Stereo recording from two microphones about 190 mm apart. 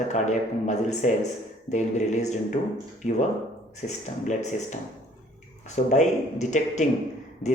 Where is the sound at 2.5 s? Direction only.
35° left (ahead or behind).